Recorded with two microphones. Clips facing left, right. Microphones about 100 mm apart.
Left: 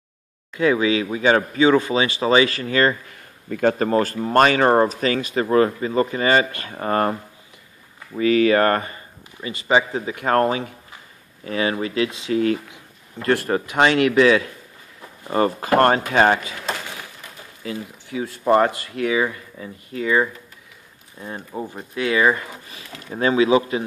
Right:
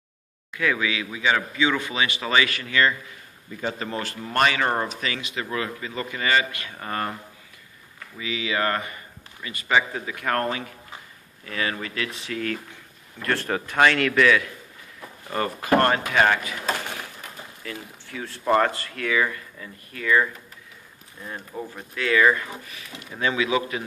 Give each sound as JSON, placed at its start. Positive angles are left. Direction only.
{"t": 0.6, "sound": "speech", "side_deg": 30}
{"t": 1.0, "sound": "speech", "side_deg": 40}
{"t": 3.4, "sound": "speech", "side_deg": 60}
{"t": 8.2, "sound": "speech", "side_deg": 50}
{"t": 8.9, "sound": "speech", "side_deg": 25}
{"t": 17.6, "sound": "speech", "side_deg": 15}
{"t": 22.7, "sound": "speech", "side_deg": 35}